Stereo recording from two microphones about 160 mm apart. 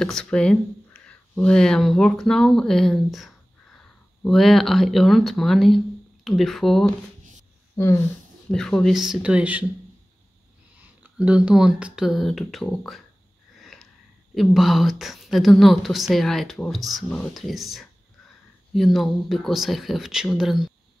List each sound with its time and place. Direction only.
0.0 s a woman's voice: 5° left (ahead or behind)
7.7 s speech: 15° left (ahead or behind)
8.5 s a woman's voice: 5° left (ahead or behind)
11.0 s a woman's voice: 5° right (ahead or behind)
13.6 s sniff: centre (ahead or behind)
14.3 s a woman's voice: centre (ahead or behind)